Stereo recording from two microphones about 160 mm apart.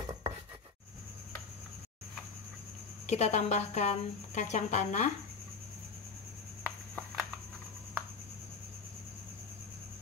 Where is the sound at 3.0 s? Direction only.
45° left (ahead or behind).